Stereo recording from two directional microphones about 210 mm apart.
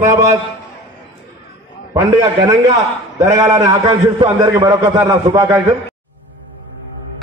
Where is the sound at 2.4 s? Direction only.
15° right (ahead or behind).